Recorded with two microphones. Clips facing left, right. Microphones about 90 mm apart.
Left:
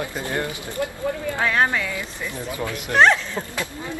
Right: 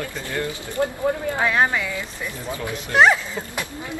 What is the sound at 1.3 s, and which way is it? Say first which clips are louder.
Speech: left 2 dB; 10° right (ahead or behind).